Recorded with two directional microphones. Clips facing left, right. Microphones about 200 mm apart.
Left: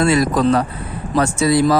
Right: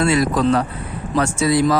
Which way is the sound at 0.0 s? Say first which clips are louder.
Left 2 dB; 40° left (ahead or behind).